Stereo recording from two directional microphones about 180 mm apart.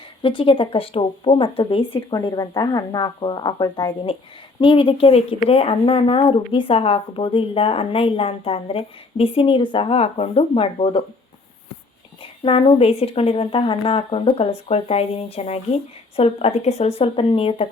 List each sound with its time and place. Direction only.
0.2 s speech: 30° left (ahead or behind)
12.2 s speech: 30° left (ahead or behind)